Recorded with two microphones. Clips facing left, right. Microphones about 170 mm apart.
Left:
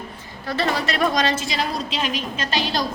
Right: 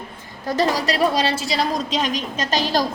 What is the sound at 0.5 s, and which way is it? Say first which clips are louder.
A woman's voice: right 3 dB; 35° right (ahead or behind).